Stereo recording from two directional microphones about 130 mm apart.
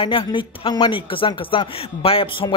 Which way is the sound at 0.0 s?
40° left (ahead or behind).